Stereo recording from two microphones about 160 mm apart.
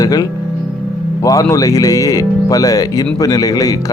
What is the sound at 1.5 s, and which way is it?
A man's voice, 20° left (ahead or behind).